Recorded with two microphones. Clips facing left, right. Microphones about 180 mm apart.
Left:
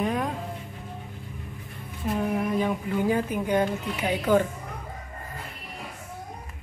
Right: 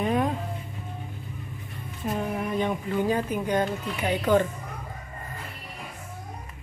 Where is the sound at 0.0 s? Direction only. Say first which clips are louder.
Right 2 dB; 5° right (ahead or behind).